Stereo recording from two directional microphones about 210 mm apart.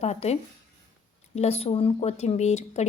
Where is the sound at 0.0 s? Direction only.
30° left (ahead or behind).